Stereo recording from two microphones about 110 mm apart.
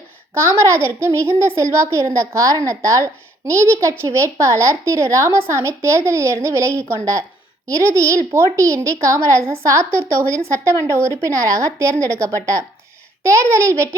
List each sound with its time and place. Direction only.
0.3 s a child's voice: 25° right (ahead or behind)